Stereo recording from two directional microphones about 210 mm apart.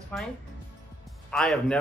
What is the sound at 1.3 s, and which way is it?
Speech, 5° left (ahead or behind).